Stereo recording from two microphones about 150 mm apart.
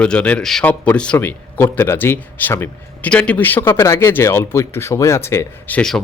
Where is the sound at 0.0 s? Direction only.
10° left (ahead or behind).